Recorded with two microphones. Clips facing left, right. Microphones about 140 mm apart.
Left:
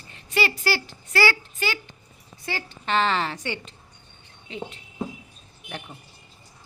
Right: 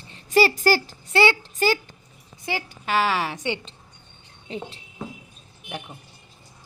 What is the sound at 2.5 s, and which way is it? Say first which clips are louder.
Speech: right 1 dB; 10° right (ahead or behind).